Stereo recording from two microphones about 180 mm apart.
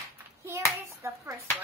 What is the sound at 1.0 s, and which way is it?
Speech, 15° right (ahead or behind).